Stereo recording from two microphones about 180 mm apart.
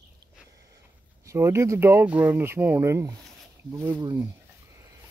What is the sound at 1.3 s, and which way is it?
Speech, 15° right (ahead or behind).